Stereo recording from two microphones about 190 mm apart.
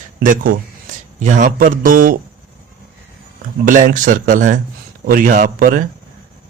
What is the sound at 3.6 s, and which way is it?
A man's voice, 45° right (ahead or behind).